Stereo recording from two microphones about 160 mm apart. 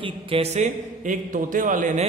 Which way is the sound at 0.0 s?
35° right (ahead or behind).